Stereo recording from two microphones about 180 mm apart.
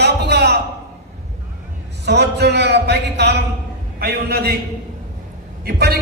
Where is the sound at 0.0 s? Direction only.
70° right (ahead or behind).